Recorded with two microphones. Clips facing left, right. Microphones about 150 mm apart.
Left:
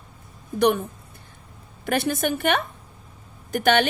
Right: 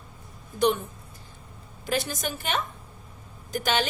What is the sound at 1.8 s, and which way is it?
A woman's voice, 60° left (ahead or behind).